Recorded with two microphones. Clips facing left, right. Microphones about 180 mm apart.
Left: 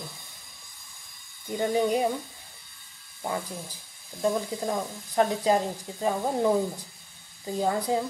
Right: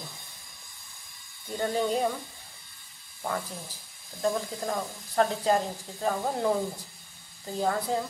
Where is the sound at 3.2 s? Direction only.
15° left (ahead or behind).